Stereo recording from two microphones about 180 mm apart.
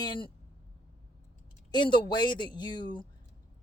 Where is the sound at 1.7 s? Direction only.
25° left (ahead or behind).